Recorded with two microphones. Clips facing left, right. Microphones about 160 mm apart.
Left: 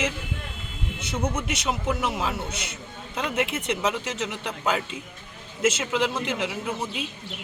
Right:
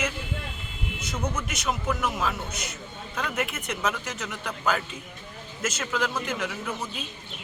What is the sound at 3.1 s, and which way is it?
Speech, 25° left (ahead or behind).